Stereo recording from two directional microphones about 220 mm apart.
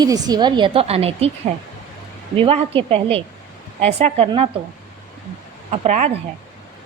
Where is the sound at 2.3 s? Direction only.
25° right (ahead or behind).